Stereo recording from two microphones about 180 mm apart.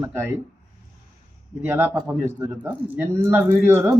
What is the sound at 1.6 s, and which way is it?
Speech, 10° right (ahead or behind).